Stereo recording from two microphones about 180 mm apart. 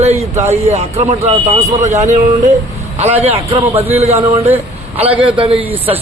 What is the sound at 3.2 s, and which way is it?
A man's voice, 35° right (ahead or behind).